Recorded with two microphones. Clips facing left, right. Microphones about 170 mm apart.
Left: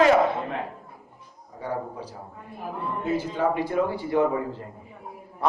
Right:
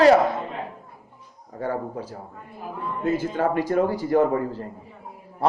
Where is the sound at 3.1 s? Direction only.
45° right (ahead or behind).